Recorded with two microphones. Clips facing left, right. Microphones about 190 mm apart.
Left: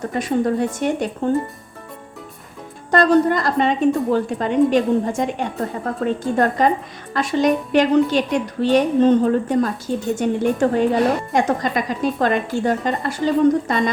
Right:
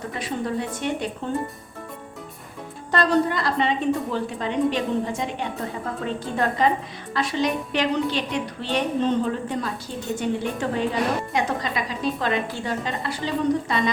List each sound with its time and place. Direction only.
0.1 s a woman's voice: 45° left (ahead or behind)
2.9 s a woman's voice: 45° left (ahead or behind)